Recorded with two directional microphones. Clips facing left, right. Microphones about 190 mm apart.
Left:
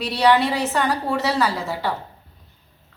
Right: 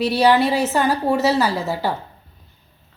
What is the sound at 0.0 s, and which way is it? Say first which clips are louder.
A woman's voice: right 2 dB; 25° right (ahead or behind).